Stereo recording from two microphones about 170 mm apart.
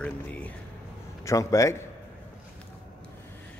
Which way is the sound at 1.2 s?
20° left (ahead or behind).